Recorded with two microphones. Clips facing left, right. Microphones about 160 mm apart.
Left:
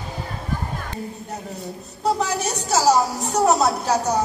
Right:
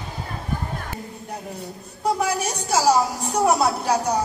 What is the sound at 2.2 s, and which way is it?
Speech, 10° right (ahead or behind).